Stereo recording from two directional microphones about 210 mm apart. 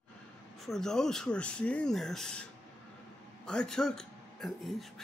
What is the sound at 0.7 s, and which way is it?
Speech, centre (ahead or behind).